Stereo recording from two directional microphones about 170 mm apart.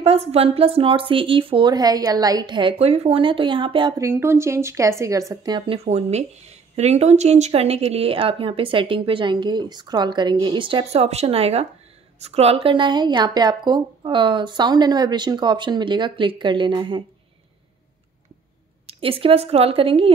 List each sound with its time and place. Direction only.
0.0 s speech: 35° right (ahead or behind)
4.0 s speech: 15° right (ahead or behind)
5.9 s speech: 40° right (ahead or behind)
18.9 s speech: 35° right (ahead or behind)